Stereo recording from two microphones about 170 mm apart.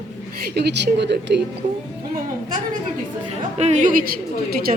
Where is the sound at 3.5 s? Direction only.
40° right (ahead or behind).